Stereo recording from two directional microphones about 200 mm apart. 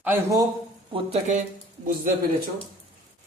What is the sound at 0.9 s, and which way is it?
Speech, 35° right (ahead or behind).